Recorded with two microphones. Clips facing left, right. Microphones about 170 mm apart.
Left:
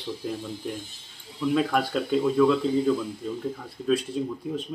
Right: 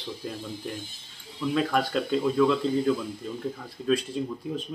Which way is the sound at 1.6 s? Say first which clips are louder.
Even; 5° left (ahead or behind).